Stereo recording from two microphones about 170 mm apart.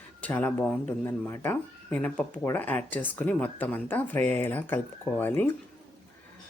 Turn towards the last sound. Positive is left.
turn(degrees=15)  # may be behind; listen again after turning